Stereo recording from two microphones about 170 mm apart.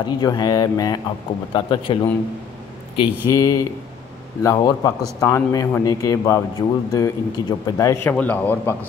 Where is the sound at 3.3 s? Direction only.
20° left (ahead or behind).